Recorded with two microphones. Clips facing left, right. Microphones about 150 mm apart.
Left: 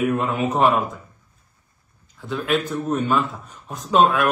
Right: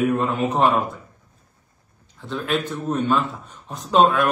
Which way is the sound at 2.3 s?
5° left (ahead or behind).